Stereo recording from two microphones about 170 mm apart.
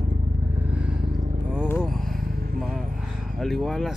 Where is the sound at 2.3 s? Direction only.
60° right (ahead or behind).